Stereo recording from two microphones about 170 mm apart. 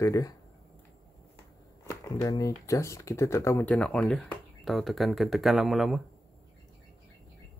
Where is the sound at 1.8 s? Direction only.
20° left (ahead or behind); by 6.0 s centre (ahead or behind).